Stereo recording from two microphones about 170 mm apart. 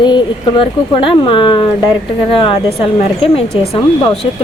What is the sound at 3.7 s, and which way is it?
Speech, 25° left (ahead or behind).